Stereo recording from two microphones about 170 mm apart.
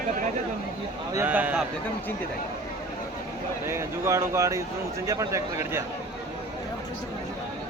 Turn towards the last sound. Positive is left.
turn(degrees=-15)  # may be behind; listen again after turning